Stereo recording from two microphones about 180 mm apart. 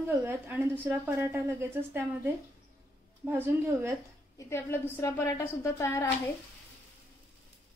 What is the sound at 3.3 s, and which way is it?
Speech, 15° right (ahead or behind).